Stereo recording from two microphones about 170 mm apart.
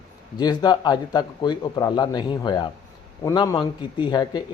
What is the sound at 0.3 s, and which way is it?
Speech, 25° left (ahead or behind).